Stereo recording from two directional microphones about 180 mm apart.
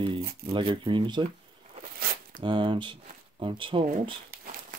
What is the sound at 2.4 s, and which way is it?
Speech, 25° right (ahead or behind).